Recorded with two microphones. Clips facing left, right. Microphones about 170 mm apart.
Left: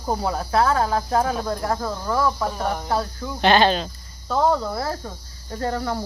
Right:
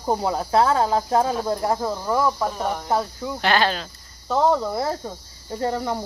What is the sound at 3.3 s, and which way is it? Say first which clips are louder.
Speech: left 4 dB; 25° left (ahead or behind).